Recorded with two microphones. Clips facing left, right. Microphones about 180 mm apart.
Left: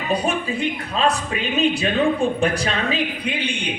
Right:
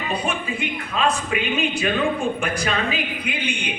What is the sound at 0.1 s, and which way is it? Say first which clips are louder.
Speech: left 5 dB; 40° left (ahead or behind).